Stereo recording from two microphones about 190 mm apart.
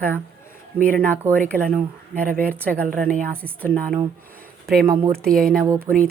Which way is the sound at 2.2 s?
10° left (ahead or behind).